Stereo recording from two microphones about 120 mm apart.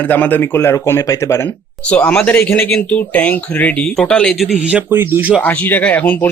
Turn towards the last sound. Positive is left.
turn(degrees=15)  # may be behind; listen again after turning